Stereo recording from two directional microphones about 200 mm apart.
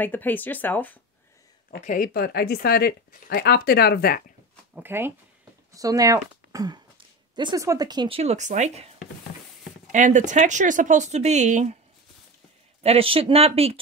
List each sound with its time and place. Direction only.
0.0 s speech: 10° left (ahead or behind)
1.7 s speech: 45° left (ahead or behind)
4.7 s speech: 10° right (ahead or behind); by 8.8 s 35° right (ahead or behind)
9.9 s speech: 40° right (ahead or behind)
12.8 s speech: 30° right (ahead or behind)